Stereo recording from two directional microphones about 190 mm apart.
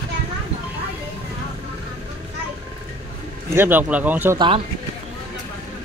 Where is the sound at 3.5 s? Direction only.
10° right (ahead or behind).